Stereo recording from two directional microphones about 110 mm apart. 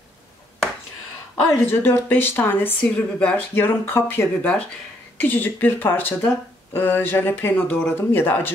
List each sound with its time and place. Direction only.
1.3 s a woman's voice: 20° left (ahead or behind)